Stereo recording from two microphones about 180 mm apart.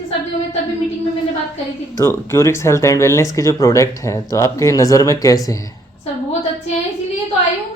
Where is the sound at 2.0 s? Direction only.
15° left (ahead or behind).